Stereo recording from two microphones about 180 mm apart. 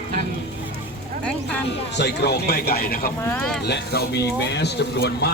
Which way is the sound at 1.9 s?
70° left (ahead or behind).